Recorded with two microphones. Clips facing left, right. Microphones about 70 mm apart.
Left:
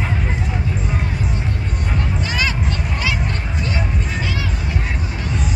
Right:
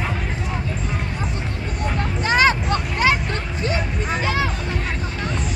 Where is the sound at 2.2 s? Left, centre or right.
Right.